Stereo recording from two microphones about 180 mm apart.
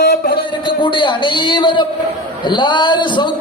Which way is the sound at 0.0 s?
55° left (ahead or behind).